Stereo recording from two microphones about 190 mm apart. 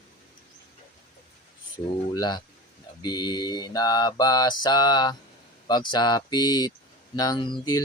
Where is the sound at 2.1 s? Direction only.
20° left (ahead or behind).